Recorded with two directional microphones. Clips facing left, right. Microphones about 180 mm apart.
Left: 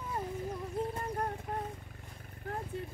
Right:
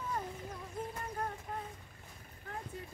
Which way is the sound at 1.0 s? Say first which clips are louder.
Left 4 dB; 35° left (ahead or behind).